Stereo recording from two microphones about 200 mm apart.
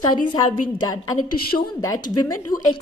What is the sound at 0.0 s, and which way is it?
A woman's voice, 20° left (ahead or behind).